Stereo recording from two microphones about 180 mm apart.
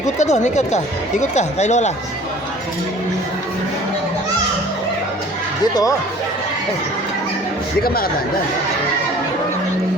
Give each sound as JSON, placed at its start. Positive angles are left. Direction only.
{"t": 0.2, "sound": "speech", "side_deg": 40}